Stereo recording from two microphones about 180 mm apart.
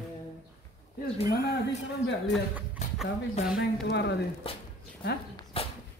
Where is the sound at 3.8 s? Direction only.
70° left (ahead or behind).